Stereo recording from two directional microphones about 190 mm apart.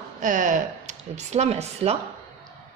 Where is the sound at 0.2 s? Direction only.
45° right (ahead or behind).